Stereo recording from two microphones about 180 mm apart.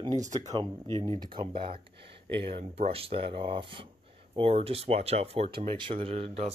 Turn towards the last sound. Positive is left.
turn(degrees=-30)  # may be behind; listen again after turning